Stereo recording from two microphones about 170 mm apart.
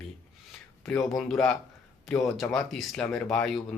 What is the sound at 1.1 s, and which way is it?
Speech, centre (ahead or behind).